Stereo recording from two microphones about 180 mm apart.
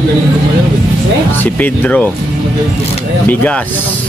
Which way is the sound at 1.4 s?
10° left (ahead or behind).